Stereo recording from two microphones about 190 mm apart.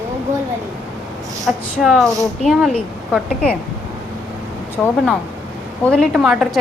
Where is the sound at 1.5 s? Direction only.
Centre (ahead or behind).